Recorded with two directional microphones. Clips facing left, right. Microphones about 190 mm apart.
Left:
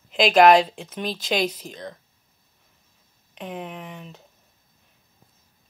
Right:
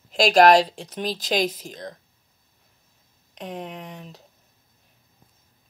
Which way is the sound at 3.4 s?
40° right (ahead or behind).